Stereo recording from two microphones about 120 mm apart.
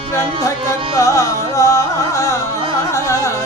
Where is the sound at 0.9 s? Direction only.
25° left (ahead or behind).